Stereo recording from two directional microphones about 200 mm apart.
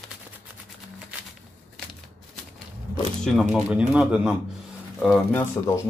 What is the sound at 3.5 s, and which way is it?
Speech, 5° right (ahead or behind).